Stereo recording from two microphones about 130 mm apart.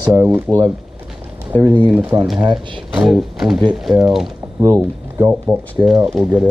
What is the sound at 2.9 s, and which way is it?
Speech, 5° right (ahead or behind).